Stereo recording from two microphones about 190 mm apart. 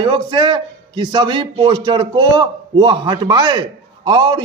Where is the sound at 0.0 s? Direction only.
25° right (ahead or behind).